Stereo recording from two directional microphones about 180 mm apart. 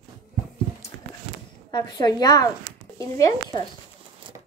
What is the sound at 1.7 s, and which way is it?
Speech, 20° left (ahead or behind).